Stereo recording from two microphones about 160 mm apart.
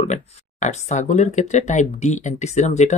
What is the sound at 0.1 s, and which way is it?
Speech, 45° left (ahead or behind).